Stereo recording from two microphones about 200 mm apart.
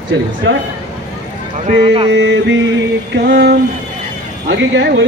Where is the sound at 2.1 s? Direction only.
65° right (ahead or behind).